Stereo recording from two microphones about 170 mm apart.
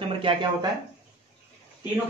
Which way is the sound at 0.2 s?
30° right (ahead or behind).